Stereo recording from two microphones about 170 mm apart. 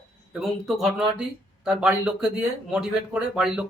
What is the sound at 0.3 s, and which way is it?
Speech, centre (ahead or behind).